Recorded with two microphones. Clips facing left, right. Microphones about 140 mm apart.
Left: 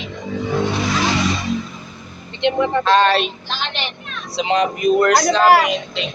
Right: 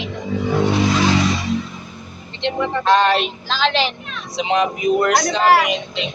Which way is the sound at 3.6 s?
90° right.